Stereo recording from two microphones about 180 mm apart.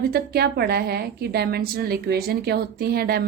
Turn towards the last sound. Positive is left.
turn(degrees=-60)  # may be behind; listen again after turning